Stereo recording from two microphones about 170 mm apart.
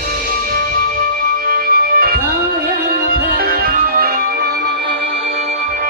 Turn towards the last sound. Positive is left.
turn(degrees=-60)  # may be behind; listen again after turning